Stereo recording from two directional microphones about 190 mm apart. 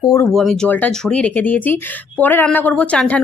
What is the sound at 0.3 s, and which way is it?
Speech, centre (ahead or behind).